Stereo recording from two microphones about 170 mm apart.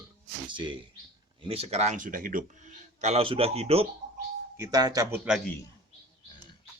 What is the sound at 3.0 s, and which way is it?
Speech, 35° right (ahead or behind).